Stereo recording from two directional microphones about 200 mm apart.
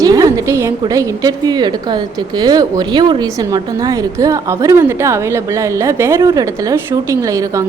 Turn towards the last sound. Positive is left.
turn(degrees=-15)  # may be behind; listen again after turning